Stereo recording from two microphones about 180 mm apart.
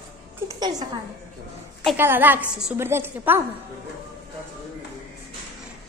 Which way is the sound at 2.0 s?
10° right (ahead or behind).